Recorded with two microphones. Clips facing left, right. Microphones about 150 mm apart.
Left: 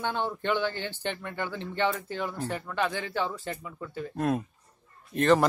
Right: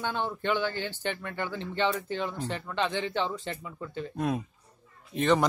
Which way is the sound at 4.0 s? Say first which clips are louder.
Left 2 dB; centre (ahead or behind).